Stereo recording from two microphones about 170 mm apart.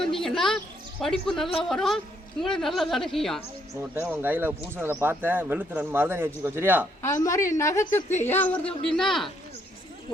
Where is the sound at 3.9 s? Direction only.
10° right (ahead or behind).